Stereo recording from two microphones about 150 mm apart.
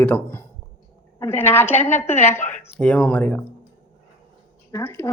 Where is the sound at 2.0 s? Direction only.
50° left (ahead or behind).